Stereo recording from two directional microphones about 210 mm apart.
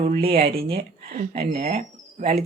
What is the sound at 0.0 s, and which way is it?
Speech, 25° right (ahead or behind).